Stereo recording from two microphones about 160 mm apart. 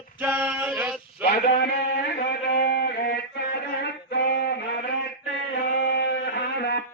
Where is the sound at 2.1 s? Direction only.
90° left.